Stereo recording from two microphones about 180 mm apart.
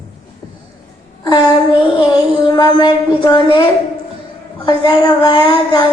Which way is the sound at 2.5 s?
25° left (ahead or behind).